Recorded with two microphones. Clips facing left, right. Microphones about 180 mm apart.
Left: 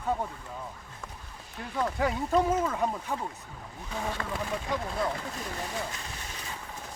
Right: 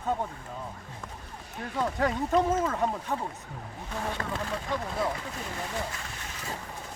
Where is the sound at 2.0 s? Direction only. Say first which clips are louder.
Right 1 dB; 5° left (ahead or behind).